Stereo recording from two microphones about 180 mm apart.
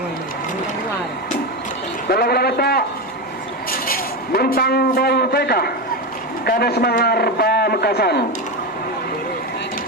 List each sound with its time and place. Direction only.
2.0 s a man's voice: 55° left (ahead or behind)